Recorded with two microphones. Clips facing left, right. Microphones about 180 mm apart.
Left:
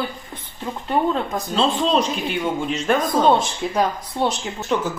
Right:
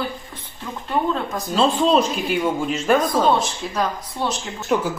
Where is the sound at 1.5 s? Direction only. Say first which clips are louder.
Right 2 dB; 5° right (ahead or behind).